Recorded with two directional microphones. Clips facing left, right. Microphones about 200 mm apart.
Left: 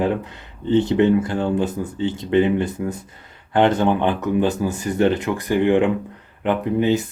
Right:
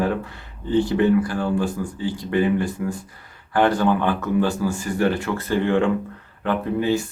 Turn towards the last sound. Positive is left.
turn(degrees=20)  # may be behind; listen again after turning